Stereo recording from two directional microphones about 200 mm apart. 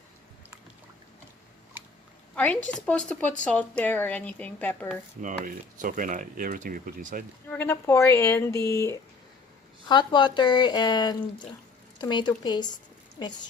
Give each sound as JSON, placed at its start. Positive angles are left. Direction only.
{"t": 2.3, "sound": "a woman's voice", "side_deg": 5}
{"t": 5.2, "sound": "speech", "side_deg": -40}
{"t": 7.5, "sound": "a woman's voice", "side_deg": 10}